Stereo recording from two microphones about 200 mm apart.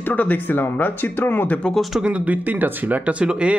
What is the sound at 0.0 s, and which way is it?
Speech, 10° left (ahead or behind).